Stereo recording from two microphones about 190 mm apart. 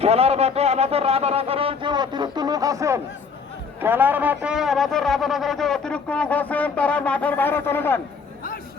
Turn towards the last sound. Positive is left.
turn(degrees=10)  # may be behind; listen again after turning